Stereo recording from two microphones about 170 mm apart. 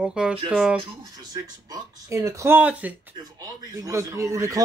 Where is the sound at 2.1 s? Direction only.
15° right (ahead or behind).